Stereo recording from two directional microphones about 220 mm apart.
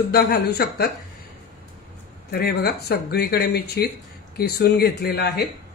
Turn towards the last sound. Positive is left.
turn(degrees=50)  # may be behind; listen again after turning